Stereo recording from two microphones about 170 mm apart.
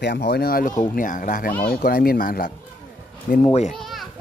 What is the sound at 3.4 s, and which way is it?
Speech, 40° left (ahead or behind).